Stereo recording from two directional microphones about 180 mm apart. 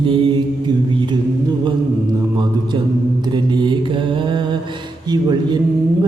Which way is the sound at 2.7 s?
25° right (ahead or behind).